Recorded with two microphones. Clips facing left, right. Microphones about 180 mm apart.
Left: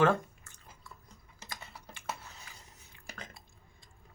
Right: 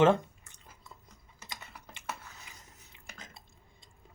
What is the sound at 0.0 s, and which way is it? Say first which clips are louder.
Chewing: right 3 dB; 20° right (ahead or behind).